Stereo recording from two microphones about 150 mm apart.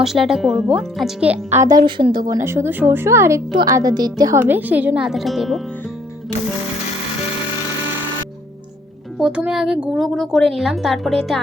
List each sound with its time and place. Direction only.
0.0 s speech: centre (ahead or behind); by 1.8 s 20° right (ahead or behind)
1.8 s a woman's voice: 35° right (ahead or behind)
4.4 s a woman's voice: 15° right (ahead or behind)
9.1 s speech: 5° right (ahead or behind)